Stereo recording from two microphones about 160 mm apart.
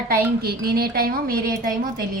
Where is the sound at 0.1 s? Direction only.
75° right (ahead or behind).